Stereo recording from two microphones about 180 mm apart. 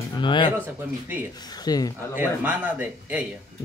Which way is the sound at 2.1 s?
10° right (ahead or behind).